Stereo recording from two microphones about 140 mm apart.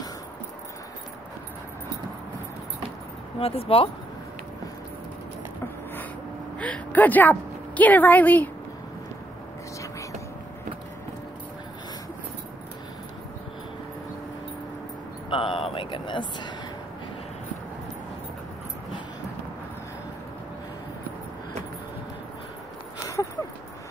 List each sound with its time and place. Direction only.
3.3 s speech: 45° left (ahead or behind)
6.6 s a woman's voice: 10° left (ahead or behind)
15.2 s a sound: 40° left (ahead or behind)